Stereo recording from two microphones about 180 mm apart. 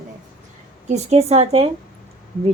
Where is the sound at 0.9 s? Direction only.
40° right (ahead or behind).